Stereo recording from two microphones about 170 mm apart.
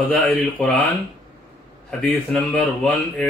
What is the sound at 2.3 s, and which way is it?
Speech, centre (ahead or behind).